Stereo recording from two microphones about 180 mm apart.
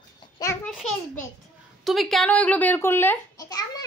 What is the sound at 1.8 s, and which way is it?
A child's voice, centre (ahead or behind).